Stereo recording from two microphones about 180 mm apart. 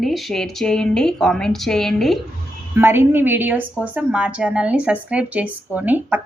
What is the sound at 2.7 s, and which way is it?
A woman's voice, 10° right (ahead or behind).